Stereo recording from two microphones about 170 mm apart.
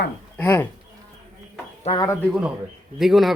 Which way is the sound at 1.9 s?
35° left (ahead or behind).